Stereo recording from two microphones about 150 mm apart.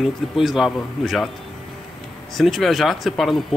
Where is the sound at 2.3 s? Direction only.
Centre (ahead or behind).